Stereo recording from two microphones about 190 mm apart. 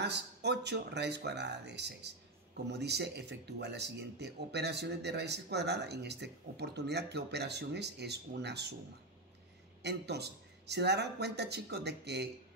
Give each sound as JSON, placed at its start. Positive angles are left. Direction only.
{"t": 0.0, "sound": "speech", "side_deg": -60}
{"t": 9.8, "sound": "speech", "side_deg": -60}